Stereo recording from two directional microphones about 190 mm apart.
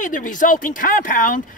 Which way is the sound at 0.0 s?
45° left (ahead or behind).